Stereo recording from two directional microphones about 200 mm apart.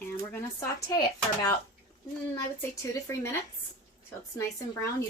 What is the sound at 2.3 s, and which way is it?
Speech, 15° left (ahead or behind).